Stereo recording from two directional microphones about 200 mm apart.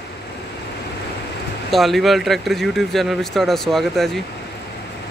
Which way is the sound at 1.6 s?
Centre (ahead or behind).